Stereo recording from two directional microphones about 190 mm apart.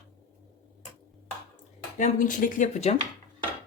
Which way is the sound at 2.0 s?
40° left (ahead or behind).